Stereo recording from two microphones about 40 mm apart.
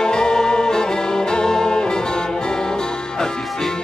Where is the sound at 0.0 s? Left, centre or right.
Centre.